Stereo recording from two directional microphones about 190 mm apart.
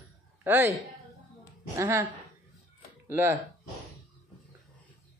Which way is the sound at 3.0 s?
10° right (ahead or behind).